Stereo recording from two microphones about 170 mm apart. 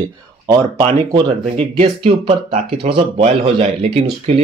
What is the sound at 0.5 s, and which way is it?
Speech, 25° right (ahead or behind).